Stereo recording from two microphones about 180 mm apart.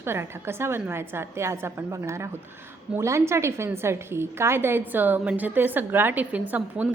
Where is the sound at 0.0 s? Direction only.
15° right (ahead or behind).